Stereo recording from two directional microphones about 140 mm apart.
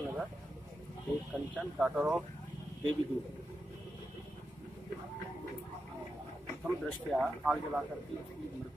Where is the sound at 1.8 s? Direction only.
5° right (ahead or behind).